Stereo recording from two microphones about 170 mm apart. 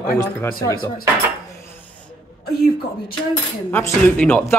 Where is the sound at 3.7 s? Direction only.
10° left (ahead or behind).